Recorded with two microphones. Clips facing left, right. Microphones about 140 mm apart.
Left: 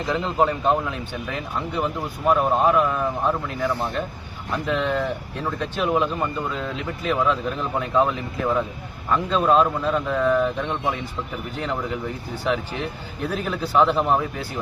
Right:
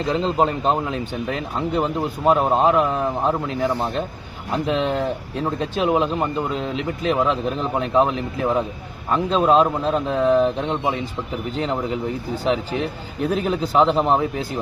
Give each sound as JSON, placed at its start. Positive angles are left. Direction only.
{"t": 0.1, "sound": "a man's voice", "side_deg": -25}
{"t": 13.2, "sound": "a man's voice", "side_deg": -20}